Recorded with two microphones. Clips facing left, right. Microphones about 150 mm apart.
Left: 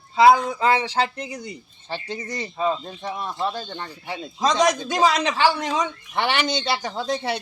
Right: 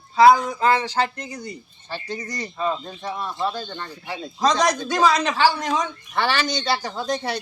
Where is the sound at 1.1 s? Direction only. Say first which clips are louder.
Left 1 dB; 10° left (ahead or behind).